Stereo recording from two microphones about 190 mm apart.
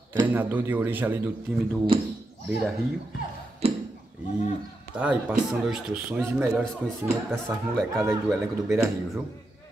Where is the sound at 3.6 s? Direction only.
30° right (ahead or behind).